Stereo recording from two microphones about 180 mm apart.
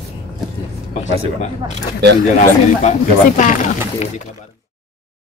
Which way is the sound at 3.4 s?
45° left (ahead or behind).